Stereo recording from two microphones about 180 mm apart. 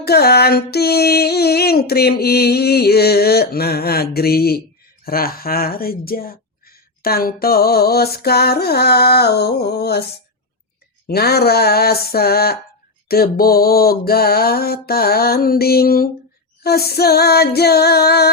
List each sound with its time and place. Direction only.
0.0 s speech: 60° left (ahead or behind)
11.1 s speech: 60° left (ahead or behind)